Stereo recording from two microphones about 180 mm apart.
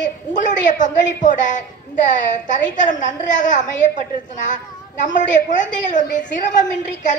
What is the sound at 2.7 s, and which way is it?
A woman's voice, 45° left (ahead or behind).